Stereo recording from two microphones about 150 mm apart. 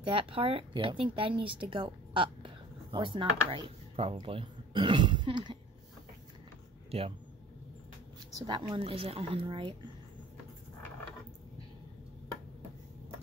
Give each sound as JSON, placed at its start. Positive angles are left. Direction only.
{"t": 0.0, "sound": "speech", "side_deg": -35}
{"t": 6.9, "sound": "speech", "side_deg": -40}
{"t": 8.4, "sound": "speech", "side_deg": -25}